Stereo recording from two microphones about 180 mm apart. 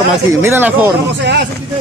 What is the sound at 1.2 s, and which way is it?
Speech, 70° right (ahead or behind).